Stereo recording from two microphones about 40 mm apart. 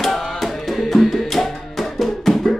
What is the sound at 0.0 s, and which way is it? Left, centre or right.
Music, centre.